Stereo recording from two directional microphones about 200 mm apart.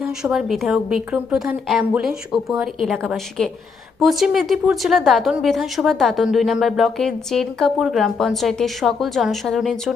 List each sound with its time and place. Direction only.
0.0 s a woman's voice: centre (ahead or behind)